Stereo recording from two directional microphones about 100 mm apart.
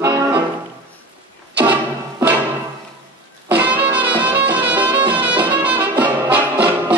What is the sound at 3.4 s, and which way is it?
Music, 15° right (ahead or behind).